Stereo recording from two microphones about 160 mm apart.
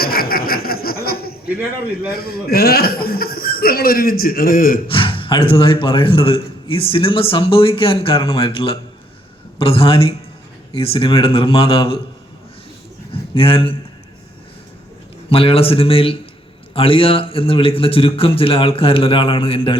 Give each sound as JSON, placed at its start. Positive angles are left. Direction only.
{"t": 0.0, "sound": "chuckle", "side_deg": 70}
{"t": 2.0, "sound": "a man's voice", "side_deg": 70}
{"t": 4.9, "sound": "gasp", "side_deg": 35}
{"t": 5.8, "sound": "a man's voice", "side_deg": 35}
{"t": 13.3, "sound": "a man's voice", "side_deg": 35}
{"t": 15.3, "sound": "a man's voice", "side_deg": 35}